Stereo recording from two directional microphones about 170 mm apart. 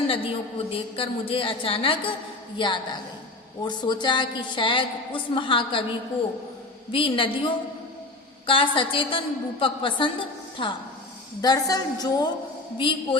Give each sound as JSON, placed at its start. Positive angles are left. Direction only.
{"t": 0.1, "sound": "a woman's voice", "side_deg": 35}
{"t": 6.9, "sound": "a woman's voice", "side_deg": 30}